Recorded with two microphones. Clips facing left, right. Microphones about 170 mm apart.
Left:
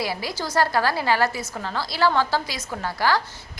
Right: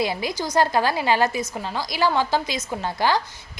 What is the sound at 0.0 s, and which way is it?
A woman's voice, 20° right (ahead or behind).